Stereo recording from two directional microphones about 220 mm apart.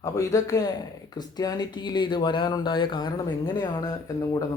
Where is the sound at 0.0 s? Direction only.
15° left (ahead or behind).